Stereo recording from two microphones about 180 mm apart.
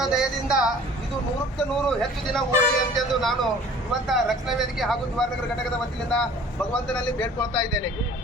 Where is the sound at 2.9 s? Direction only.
Centre (ahead or behind).